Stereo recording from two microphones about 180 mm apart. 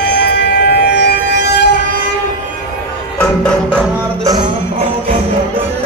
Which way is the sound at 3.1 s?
5° left (ahead or behind).